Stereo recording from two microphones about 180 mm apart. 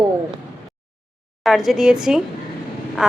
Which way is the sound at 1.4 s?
Centre (ahead or behind).